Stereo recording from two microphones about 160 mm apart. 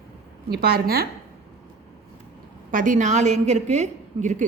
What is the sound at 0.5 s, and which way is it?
Speech, 75° right (ahead or behind).